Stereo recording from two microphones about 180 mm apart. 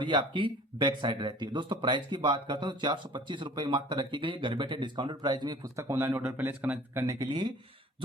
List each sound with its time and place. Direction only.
0.0 s speech: 25° right (ahead or behind)